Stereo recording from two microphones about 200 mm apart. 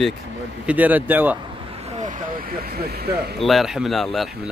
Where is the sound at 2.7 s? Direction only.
50° right (ahead or behind).